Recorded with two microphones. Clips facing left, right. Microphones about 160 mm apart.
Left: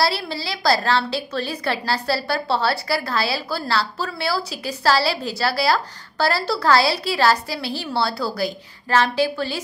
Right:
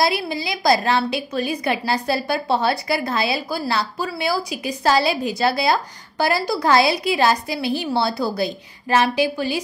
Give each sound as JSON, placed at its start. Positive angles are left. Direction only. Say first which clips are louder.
{"t": 0.0, "sound": "a woman's voice", "louder": "right 2 dB", "side_deg": -15}